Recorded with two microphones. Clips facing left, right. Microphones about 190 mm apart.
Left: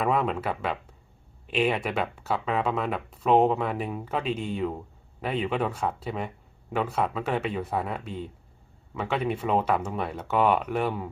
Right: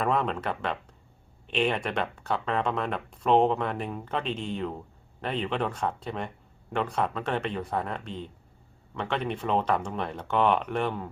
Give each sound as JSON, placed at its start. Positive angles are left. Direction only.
{"t": 0.0, "sound": "speech", "side_deg": 5}